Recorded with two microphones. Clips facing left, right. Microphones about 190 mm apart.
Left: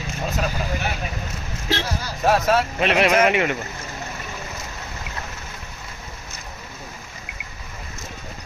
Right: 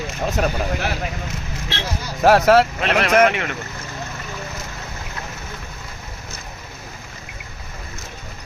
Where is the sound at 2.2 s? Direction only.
75° right (ahead or behind).